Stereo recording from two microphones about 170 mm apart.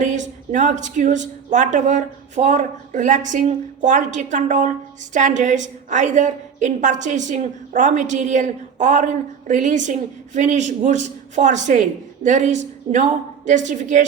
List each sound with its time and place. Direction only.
0.0 s a woman's voice: 45° right (ahead or behind)